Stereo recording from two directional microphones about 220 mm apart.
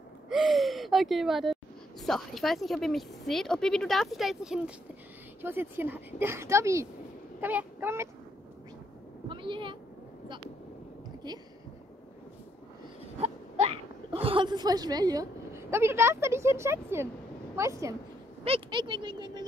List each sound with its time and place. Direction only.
0.3 s speech: centre (ahead or behind)
9.3 s speech: 20° right (ahead or behind)
13.2 s speech: 30° right (ahead or behind)